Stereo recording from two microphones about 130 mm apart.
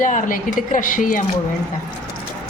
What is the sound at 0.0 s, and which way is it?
A woman's voice, 90° left.